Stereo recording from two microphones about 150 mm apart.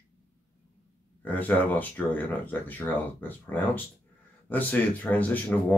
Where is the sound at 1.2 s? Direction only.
10° left (ahead or behind).